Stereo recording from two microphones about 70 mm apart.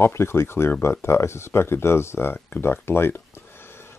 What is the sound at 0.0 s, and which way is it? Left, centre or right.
Speech, left.